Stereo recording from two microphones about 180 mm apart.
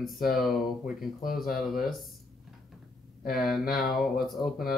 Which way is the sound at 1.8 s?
Centre (ahead or behind).